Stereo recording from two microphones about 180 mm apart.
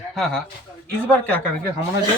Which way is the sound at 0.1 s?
5° left (ahead or behind).